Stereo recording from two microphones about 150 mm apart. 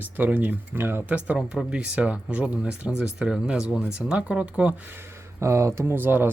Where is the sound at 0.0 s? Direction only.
10° right (ahead or behind).